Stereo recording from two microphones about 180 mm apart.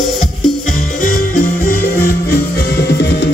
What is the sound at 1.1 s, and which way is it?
Music, 55° left (ahead or behind).